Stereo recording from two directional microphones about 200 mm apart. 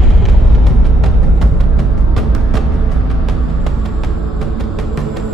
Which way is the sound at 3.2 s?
Centre (ahead or behind).